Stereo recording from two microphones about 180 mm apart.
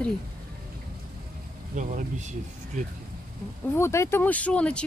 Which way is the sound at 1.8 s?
45° right (ahead or behind).